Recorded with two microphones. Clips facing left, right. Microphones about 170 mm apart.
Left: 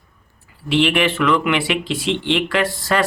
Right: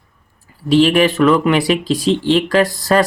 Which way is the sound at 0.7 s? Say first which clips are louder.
Right 5 dB; 40° right (ahead or behind).